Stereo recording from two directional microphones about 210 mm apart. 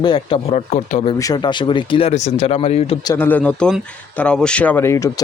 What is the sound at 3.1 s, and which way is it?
Speech, 10° left (ahead or behind).